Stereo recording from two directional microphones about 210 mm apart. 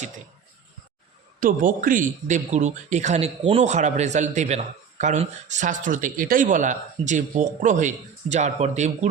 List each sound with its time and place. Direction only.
1.4 s a man's voice: 40° right (ahead or behind)